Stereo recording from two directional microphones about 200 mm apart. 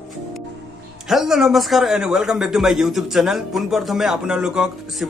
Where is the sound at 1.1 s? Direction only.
Centre (ahead or behind).